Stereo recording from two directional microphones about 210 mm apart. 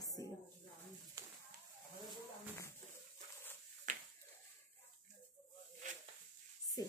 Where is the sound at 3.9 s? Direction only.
35° right (ahead or behind).